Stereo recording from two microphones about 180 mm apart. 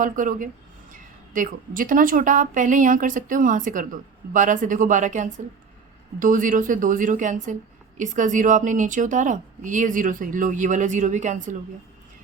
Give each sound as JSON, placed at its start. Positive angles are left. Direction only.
{"t": 0.0, "sound": "a woman's voice", "side_deg": -50}